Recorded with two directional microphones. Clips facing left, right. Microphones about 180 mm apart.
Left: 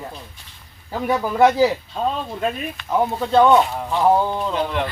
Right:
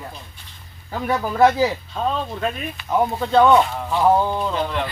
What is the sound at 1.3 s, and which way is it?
Speech, 15° left (ahead or behind).